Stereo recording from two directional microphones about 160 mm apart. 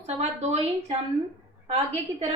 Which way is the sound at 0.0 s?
40° right (ahead or behind).